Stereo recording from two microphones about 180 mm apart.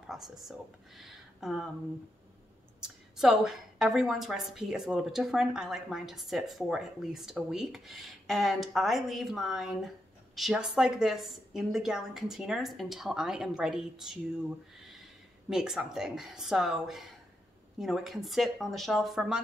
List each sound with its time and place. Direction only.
0.0 s speech: centre (ahead or behind)
3.2 s a woman's voice: 5° right (ahead or behind)
15.5 s a woman's voice: 5° right (ahead or behind)